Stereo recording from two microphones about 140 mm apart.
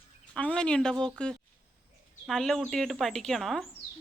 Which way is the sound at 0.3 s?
10° left (ahead or behind).